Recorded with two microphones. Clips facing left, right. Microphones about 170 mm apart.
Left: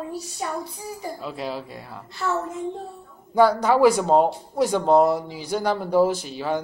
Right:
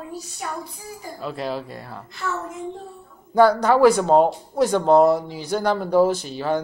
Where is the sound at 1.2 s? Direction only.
5° left (ahead or behind).